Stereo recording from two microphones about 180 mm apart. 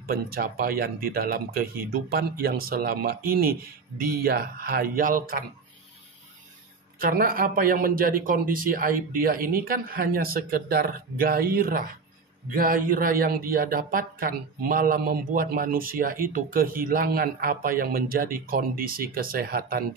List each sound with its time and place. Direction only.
0.0 s a man's voice: 55° right (ahead or behind)
7.0 s a man's voice: 55° right (ahead or behind)